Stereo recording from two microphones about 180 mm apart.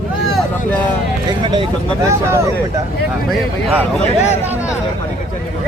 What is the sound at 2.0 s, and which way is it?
Speech, 15° right (ahead or behind).